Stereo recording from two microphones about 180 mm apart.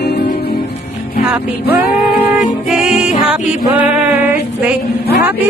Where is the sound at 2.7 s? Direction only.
5° right (ahead or behind).